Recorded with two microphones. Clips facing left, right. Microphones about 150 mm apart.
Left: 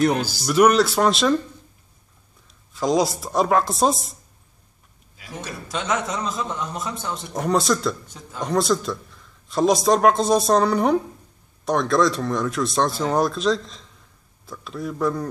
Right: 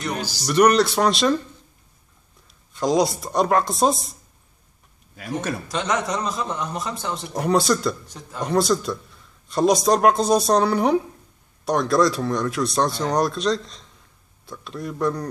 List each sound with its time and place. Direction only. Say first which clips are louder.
0.0 s speech: left 8 dB; 50° left (ahead or behind)
0.5 s a man's voice: even; 5° left (ahead or behind)
2.7 s a man's voice: even; centre (ahead or behind)
5.1 s speech: right 8 dB; 55° right (ahead or behind)
5.7 s a man's voice: left 1 dB; centre (ahead or behind)